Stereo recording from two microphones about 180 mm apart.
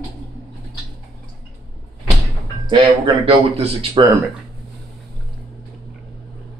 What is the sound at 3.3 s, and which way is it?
Speech, 35° right (ahead or behind).